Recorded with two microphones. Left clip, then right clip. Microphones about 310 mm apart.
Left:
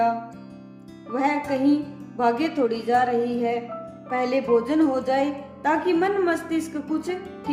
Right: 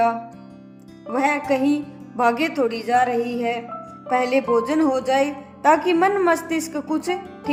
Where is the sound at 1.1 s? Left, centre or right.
Right.